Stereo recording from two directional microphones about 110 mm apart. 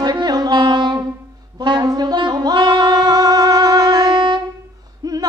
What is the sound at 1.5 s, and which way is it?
Saxophone, 40° right (ahead or behind).